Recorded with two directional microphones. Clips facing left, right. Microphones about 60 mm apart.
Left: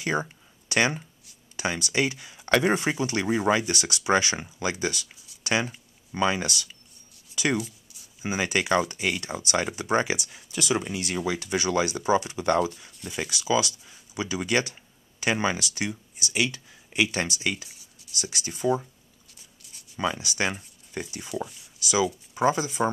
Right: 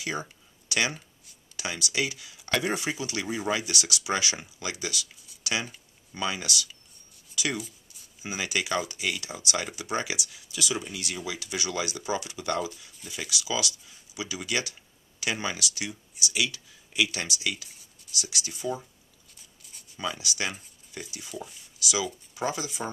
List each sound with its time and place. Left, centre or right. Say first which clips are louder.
0.0 s a sound: left 6 dB; left
1.6 s speech: left 4 dB; left
5.4 s a sound: left 5 dB; left
5.7 s speech: left 6 dB; left
7.5 s a sound: left 7 dB; centre
8.2 s speech: left 5 dB; left
19.6 s writing: even; centre
20.0 s speech: left 5 dB; left
22.3 s speech: left 7 dB; left